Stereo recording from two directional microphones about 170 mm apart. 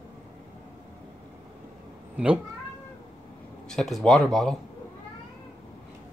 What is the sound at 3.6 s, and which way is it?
Speech, centre (ahead or behind).